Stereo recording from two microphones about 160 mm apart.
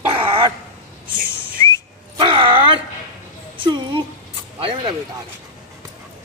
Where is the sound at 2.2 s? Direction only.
30° right (ahead or behind).